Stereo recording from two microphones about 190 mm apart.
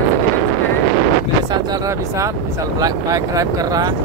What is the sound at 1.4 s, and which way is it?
Speech, 20° right (ahead or behind).